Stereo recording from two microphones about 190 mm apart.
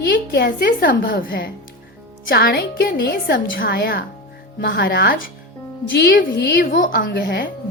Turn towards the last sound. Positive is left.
turn(degrees=60)  # may be behind; listen again after turning